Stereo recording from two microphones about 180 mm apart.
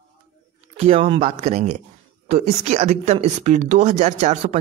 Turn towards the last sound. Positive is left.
turn(degrees=-40)  # may be behind; listen again after turning